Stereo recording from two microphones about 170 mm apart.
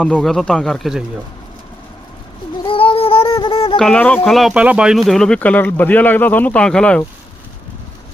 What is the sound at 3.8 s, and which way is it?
Speech, 5° left (ahead or behind).